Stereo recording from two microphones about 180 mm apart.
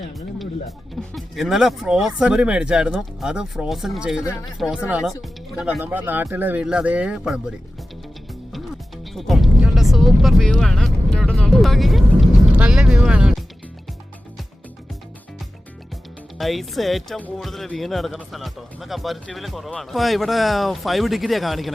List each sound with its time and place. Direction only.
1.1 s speech: centre (ahead or behind)
4.2 s speech: 15° left (ahead or behind)
4.5 s speech: centre (ahead or behind)
9.1 s speech: centre (ahead or behind)
16.4 s speech: centre (ahead or behind)